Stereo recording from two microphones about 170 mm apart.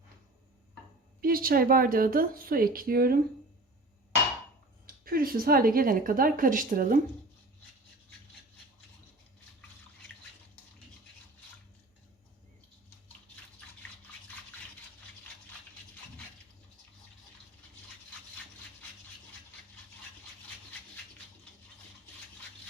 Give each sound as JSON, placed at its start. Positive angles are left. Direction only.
{"t": 1.2, "sound": "speech", "side_deg": -60}
{"t": 5.0, "sound": "speech", "side_deg": -60}